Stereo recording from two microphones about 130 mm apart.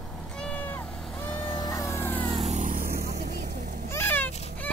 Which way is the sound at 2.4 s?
75° right (ahead or behind).